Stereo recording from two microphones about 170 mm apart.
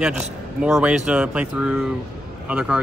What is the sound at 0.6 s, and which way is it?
Speech, 5° right (ahead or behind).